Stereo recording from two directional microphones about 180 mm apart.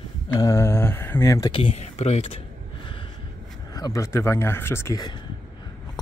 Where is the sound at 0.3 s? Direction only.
20° left (ahead or behind).